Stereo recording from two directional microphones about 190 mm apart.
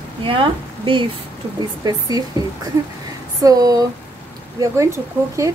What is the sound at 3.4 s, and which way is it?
Speech, 20° right (ahead or behind).